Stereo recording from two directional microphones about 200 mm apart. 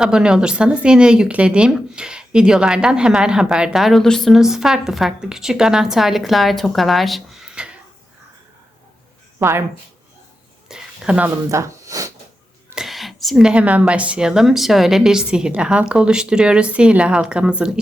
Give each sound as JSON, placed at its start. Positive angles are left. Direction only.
{"t": 0.0, "sound": "speech", "side_deg": -5}
{"t": 9.4, "sound": "speech", "side_deg": -10}
{"t": 10.7, "sound": "a sound", "side_deg": -5}
{"t": 11.4, "sound": "snort", "side_deg": -15}
{"t": 12.7, "sound": "speech", "side_deg": 0}